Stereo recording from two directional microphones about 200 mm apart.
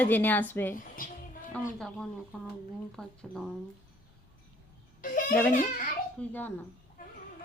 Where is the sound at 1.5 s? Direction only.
5° left (ahead or behind).